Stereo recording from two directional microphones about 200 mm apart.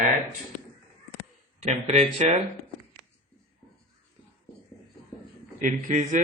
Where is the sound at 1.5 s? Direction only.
35° right (ahead or behind).